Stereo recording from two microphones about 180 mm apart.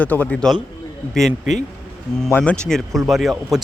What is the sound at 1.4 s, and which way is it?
Speech, 45° left (ahead or behind).